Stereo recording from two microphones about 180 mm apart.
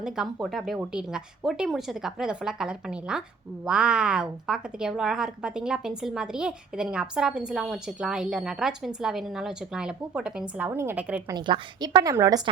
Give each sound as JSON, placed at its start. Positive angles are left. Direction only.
{"t": 0.0, "sound": "a woman's voice", "side_deg": -5}
{"t": 11.3, "sound": "a woman's voice", "side_deg": -25}